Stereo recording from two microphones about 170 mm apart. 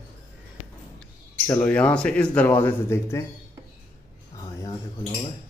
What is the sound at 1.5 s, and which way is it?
Speech, 10° left (ahead or behind).